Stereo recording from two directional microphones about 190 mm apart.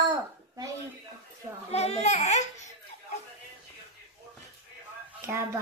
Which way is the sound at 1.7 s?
35° left (ahead or behind).